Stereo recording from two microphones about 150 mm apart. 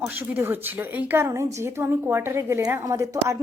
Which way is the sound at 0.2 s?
15° right (ahead or behind).